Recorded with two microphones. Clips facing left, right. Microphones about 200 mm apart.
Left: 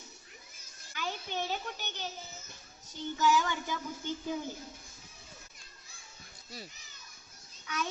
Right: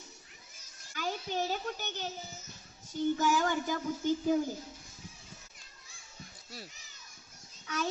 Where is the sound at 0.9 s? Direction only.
40° right (ahead or behind).